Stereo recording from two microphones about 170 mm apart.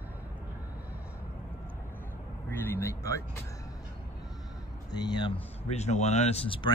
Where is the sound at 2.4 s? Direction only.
15° left (ahead or behind).